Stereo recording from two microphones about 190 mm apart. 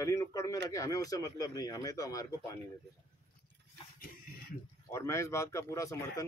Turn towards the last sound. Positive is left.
turn(degrees=15)  # may be behind; listen again after turning